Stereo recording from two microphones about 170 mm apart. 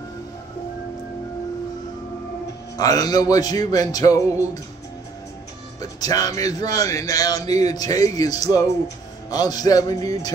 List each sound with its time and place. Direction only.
2.8 s speech: 20° left (ahead or behind)
5.8 s speech: 20° left (ahead or behind)